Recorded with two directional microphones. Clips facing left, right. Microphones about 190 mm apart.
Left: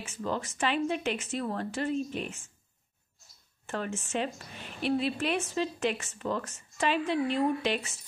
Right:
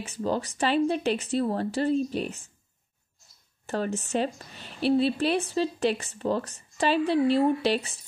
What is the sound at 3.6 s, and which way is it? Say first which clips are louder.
A woman's voice: right 5 dB; 35° right (ahead or behind).